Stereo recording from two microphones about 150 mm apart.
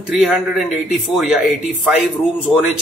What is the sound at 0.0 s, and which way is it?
A man's voice, 5° right (ahead or behind).